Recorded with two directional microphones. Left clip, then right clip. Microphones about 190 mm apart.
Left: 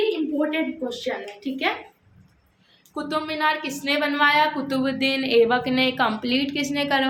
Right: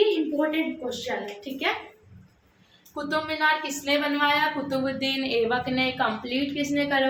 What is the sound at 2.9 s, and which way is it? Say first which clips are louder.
Speech: left 1 dB; 40° left (ahead or behind).